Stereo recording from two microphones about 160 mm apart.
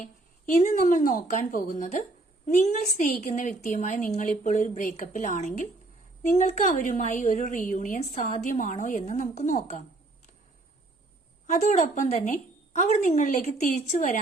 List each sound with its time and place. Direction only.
0.5 s a woman's voice: 55° left (ahead or behind)
11.4 s a woman's voice: 55° left (ahead or behind)